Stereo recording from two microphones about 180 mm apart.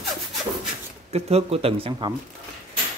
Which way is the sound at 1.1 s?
35° right (ahead or behind).